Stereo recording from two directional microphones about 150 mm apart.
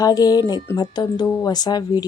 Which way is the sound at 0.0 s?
25° left (ahead or behind).